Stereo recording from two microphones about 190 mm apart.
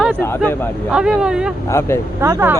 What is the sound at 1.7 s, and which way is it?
Speech, 15° left (ahead or behind).